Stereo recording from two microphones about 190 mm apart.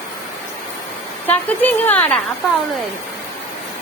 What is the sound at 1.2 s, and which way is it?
Speech, 10° left (ahead or behind).